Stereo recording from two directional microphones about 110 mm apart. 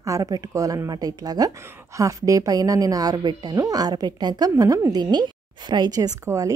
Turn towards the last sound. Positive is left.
turn(degrees=-30)  # may be behind; listen again after turning